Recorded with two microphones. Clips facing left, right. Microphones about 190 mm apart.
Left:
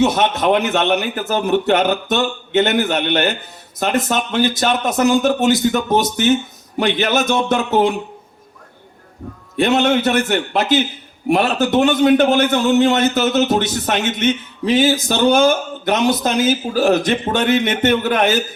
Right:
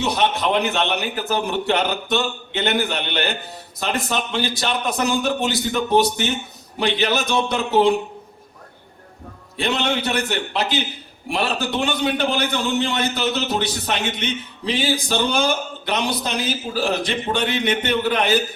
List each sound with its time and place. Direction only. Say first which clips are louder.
0.0 s a man's voice: left 5 dB; 45° left (ahead or behind)
9.6 s a man's voice: left 8 dB; 50° left (ahead or behind)